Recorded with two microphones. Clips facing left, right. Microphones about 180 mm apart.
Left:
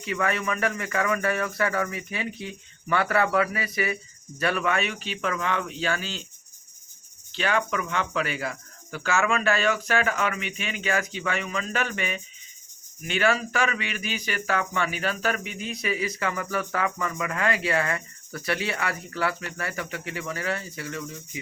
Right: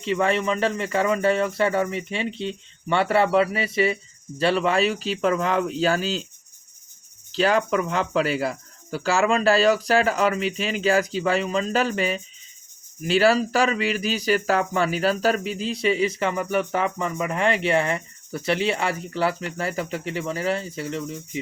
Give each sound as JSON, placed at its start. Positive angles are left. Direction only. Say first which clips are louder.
{"t": 0.0, "sound": "speech", "louder": "right 5 dB", "side_deg": -30}
{"t": 7.3, "sound": "speech", "louder": "right 6 dB", "side_deg": -35}